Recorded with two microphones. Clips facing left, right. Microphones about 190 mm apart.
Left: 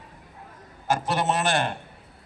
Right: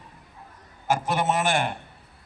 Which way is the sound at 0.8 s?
15° right (ahead or behind).